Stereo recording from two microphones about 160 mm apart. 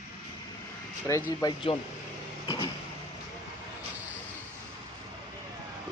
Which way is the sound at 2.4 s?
30° left (ahead or behind).